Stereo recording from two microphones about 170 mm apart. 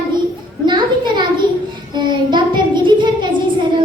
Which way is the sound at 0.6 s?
25° right (ahead or behind).